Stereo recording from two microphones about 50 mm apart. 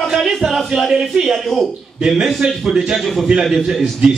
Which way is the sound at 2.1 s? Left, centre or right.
Centre.